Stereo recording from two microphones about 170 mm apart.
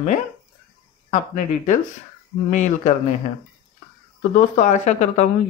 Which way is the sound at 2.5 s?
45° left (ahead or behind).